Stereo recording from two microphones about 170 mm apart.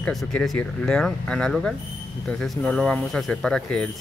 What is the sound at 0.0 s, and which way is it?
Speech, 5° left (ahead or behind).